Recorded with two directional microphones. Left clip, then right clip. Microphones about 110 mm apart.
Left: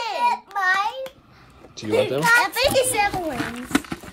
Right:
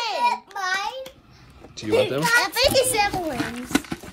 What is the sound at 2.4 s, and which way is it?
Speech, 5° left (ahead or behind).